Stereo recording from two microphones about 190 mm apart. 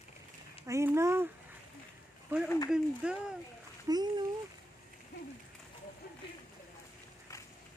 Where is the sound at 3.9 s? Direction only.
20° right (ahead or behind).